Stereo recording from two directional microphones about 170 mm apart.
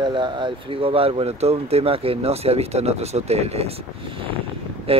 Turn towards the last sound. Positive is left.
turn(degrees=-35)  # may be behind; listen again after turning